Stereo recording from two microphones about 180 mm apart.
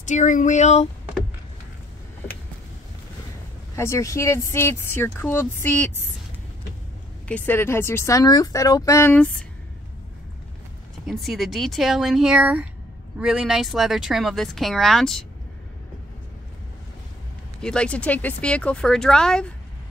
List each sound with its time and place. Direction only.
0.0 s a sound: 45° left (ahead or behind)
3.7 s speech: 15° left (ahead or behind)
7.2 s speech: 10° left (ahead or behind)
11.1 s speech: centre (ahead or behind)
17.6 s speech: 5° left (ahead or behind)